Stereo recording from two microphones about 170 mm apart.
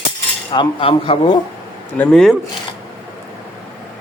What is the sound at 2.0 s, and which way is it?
Speech, 5° left (ahead or behind).